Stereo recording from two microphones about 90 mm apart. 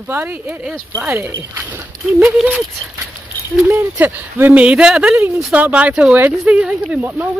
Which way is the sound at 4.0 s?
20° right (ahead or behind).